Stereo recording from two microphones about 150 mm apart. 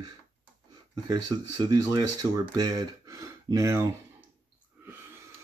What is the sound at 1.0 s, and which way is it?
Speech, 25° right (ahead or behind).